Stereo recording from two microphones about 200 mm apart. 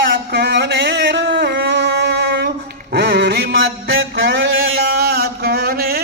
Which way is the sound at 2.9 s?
60° right (ahead or behind).